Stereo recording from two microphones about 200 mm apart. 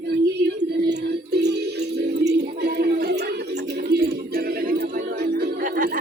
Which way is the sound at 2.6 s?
50° right (ahead or behind).